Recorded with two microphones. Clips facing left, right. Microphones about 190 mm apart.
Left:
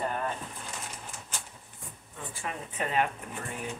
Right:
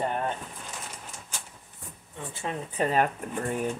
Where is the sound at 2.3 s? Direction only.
30° right (ahead or behind).